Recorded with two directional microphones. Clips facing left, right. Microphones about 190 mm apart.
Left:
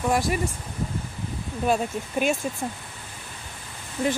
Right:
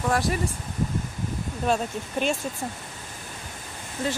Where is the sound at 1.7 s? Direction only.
10° left (ahead or behind).